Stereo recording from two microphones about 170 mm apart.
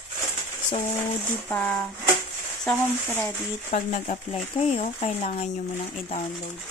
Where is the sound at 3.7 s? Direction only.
45° left (ahead or behind).